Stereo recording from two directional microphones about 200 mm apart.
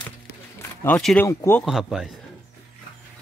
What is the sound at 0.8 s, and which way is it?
Speech, 5° left (ahead or behind).